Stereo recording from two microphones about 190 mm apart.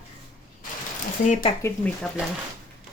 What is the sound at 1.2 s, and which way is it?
Speech, 40° left (ahead or behind).